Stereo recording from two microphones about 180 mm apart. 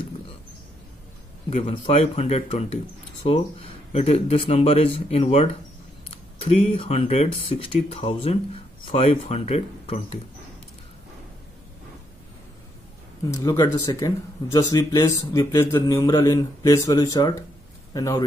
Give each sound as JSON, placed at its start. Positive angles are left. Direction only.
{"t": 1.5, "sound": "speech", "side_deg": 35}
{"t": 13.3, "sound": "speech", "side_deg": 20}